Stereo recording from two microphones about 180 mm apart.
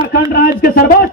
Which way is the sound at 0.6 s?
55° left (ahead or behind).